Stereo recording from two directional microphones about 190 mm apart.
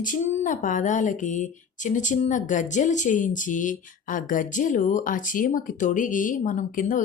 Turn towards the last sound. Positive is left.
turn(degrees=45)  # may be behind; listen again after turning